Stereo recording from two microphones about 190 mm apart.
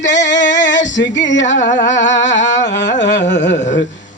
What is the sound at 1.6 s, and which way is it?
A man's voice, 40° left (ahead or behind).